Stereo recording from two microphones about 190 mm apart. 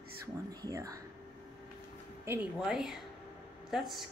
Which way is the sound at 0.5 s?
20° right (ahead or behind).